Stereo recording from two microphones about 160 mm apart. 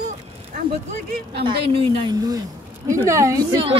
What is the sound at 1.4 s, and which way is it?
A woman's voice, 30° right (ahead or behind).